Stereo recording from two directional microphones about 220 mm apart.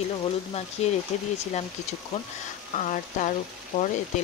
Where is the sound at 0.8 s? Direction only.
30° left (ahead or behind).